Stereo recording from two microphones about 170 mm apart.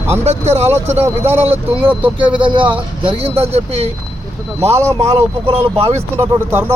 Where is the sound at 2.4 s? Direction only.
30° right (ahead or behind).